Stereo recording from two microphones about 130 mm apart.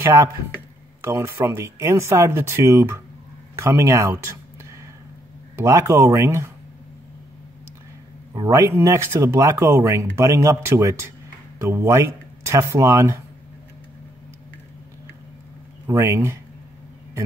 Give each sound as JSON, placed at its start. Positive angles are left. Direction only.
{"t": 0.0, "sound": "speech", "side_deg": -20}
{"t": 5.6, "sound": "speech", "side_deg": -20}
{"t": 8.3, "sound": "speech", "side_deg": -25}
{"t": 15.9, "sound": "speech", "side_deg": -20}